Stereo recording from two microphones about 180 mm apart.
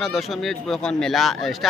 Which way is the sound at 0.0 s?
Centre (ahead or behind).